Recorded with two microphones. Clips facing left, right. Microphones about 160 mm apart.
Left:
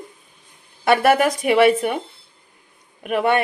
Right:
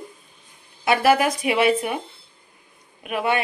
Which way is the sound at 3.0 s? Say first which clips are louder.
Left 4 dB; 55° left (ahead or behind).